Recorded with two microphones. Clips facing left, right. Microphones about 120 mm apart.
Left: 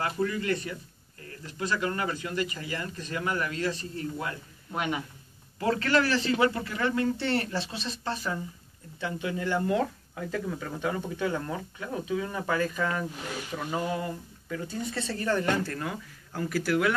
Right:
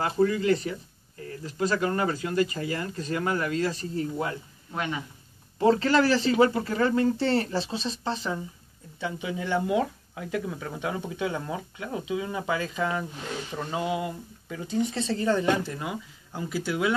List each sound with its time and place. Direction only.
0.0 s speech: 25° right (ahead or behind)
5.6 s speech: 30° right (ahead or behind)
9.0 s speech: 15° right (ahead or behind)